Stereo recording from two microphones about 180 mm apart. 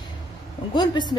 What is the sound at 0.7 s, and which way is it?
Speech, 25° left (ahead or behind).